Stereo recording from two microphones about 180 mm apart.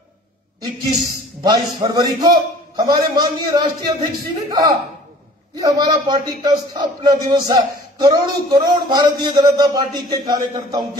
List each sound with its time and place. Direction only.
1.4 s speech: 20° right (ahead or behind)